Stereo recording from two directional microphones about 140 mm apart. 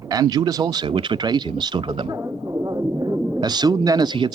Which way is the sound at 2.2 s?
25° right (ahead or behind).